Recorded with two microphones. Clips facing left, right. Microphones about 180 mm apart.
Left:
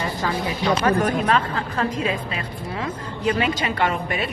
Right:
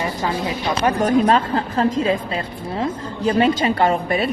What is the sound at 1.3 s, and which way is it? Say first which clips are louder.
A woman's voice: right 4 dB; 35° right (ahead or behind).